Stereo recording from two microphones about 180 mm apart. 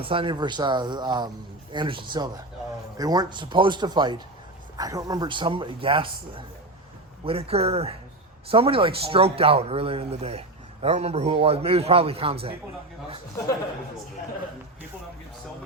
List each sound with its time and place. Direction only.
0.0 s speech: 30° right (ahead or behind)
7.3 s a man's voice: 35° right (ahead or behind)